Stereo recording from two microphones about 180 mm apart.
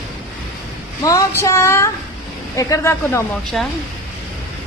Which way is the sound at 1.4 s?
15° left (ahead or behind).